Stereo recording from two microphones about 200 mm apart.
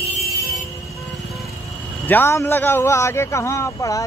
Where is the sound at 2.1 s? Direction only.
10° left (ahead or behind).